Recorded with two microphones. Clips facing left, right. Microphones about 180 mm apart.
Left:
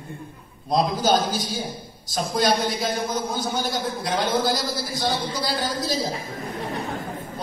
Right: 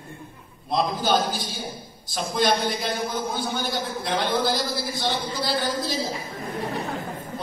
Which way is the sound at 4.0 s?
40° left (ahead or behind).